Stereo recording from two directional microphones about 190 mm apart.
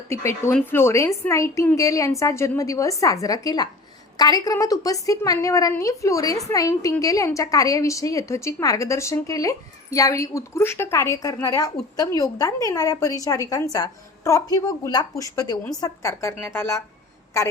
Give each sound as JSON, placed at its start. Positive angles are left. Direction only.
{"t": 0.1, "sound": "a woman's voice", "side_deg": 15}